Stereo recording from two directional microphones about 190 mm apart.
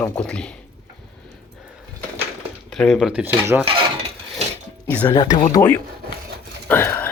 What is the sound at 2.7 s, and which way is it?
Speech, centre (ahead or behind).